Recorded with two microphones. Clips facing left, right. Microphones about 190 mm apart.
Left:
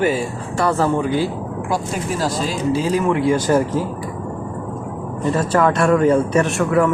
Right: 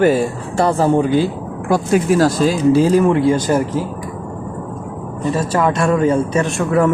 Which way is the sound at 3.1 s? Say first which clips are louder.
Right 2 dB; 20° right (ahead or behind).